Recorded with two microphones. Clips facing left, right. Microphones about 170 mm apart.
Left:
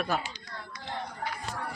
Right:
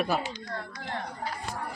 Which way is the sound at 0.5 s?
55° right (ahead or behind).